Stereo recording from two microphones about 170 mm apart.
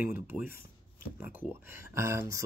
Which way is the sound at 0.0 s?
10° right (ahead or behind).